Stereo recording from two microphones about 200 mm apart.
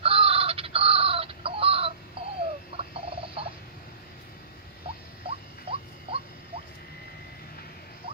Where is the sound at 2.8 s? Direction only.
30° right (ahead or behind).